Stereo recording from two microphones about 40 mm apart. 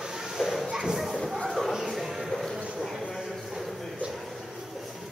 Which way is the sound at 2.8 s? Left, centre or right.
Centre.